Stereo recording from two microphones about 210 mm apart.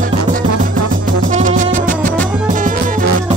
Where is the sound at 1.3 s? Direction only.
40° right (ahead or behind).